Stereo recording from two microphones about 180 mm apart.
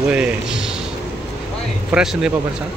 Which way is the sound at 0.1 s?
5° right (ahead or behind).